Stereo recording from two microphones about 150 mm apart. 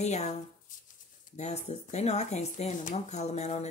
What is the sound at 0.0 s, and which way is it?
Speech, 50° left (ahead or behind).